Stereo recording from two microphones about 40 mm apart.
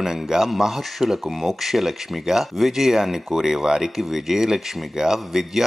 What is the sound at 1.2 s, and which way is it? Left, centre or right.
Speech, centre.